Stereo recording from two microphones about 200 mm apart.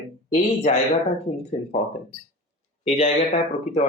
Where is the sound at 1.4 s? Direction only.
35° left (ahead or behind).